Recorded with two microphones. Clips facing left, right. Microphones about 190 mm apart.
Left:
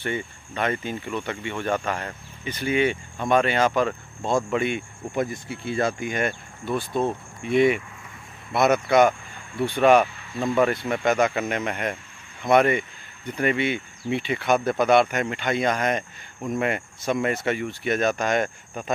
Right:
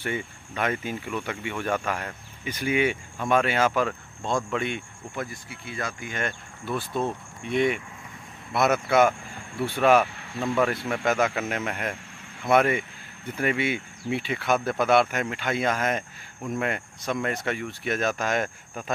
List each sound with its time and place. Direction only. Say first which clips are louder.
0.0 s speech: left 2 dB; 5° right (ahead or behind)
5.1 s speech: left 8 dB; 20° left (ahead or behind)
6.6 s speech: left 3 dB; centre (ahead or behind)